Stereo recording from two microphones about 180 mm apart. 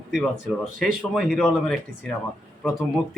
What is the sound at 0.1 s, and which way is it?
Speech, centre (ahead or behind).